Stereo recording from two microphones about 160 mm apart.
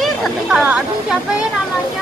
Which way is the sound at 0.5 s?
5° right (ahead or behind).